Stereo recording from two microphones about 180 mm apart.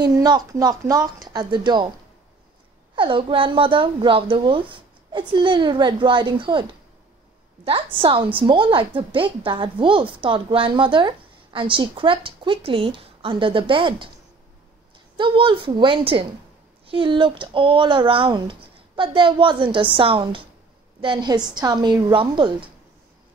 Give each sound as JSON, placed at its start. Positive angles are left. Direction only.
{"t": 0.1, "sound": "a woman's voice", "side_deg": -20}
{"t": 3.0, "sound": "a woman's voice", "side_deg": -30}
{"t": 15.1, "sound": "a woman's voice", "side_deg": -25}